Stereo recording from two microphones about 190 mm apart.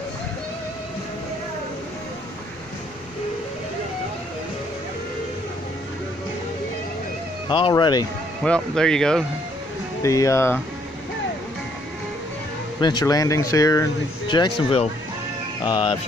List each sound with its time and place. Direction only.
7.4 s speech: 25° left (ahead or behind)
8.5 s speech: 5° left (ahead or behind)
10.0 s speech: 15° left (ahead or behind)
12.8 s speech: 20° left (ahead or behind)